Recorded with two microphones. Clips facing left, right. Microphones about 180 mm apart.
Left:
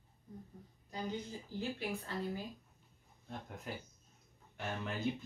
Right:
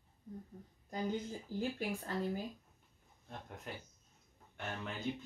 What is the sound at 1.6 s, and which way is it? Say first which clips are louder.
Speech: right 1 dB; 45° right (ahead or behind).